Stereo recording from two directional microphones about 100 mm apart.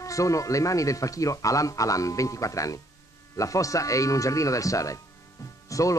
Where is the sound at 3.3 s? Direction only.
35° left (ahead or behind).